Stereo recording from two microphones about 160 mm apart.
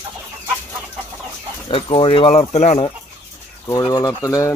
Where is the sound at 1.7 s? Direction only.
35° left (ahead or behind).